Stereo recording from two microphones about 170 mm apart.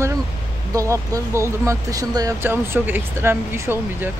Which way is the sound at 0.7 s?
20° right (ahead or behind).